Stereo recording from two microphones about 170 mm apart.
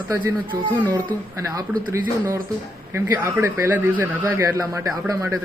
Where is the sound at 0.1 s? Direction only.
15° right (ahead or behind).